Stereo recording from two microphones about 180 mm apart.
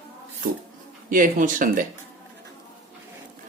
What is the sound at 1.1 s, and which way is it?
Speech, 45° right (ahead or behind).